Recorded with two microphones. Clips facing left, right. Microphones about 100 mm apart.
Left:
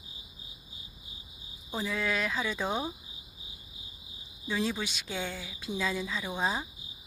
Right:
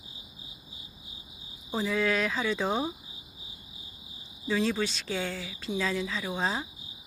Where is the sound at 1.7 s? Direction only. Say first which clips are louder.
Right 4 dB; centre (ahead or behind).